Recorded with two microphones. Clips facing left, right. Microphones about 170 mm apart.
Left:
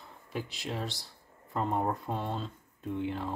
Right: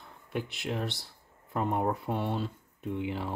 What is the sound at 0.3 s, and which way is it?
Speech, 60° right (ahead or behind).